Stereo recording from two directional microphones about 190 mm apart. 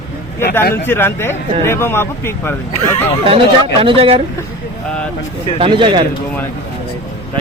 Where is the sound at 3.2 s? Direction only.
30° right (ahead or behind).